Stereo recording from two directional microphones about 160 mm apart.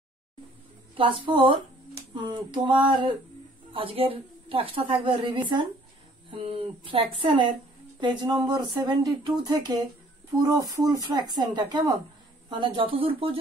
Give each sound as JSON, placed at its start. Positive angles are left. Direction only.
{"t": 0.9, "sound": "a woman's voice", "side_deg": -35}